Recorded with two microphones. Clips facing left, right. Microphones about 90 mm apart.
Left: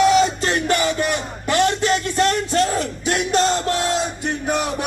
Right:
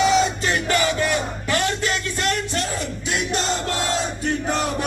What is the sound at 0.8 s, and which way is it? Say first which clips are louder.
Music: even; 25° left (ahead or behind).